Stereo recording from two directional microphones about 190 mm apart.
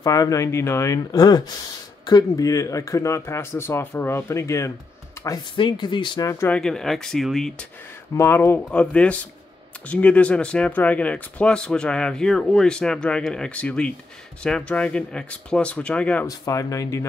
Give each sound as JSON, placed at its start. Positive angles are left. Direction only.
{"t": 0.0, "sound": "speech", "side_deg": 20}
{"t": 8.2, "sound": "speech", "side_deg": 10}
{"t": 16.3, "sound": "speech", "side_deg": 20}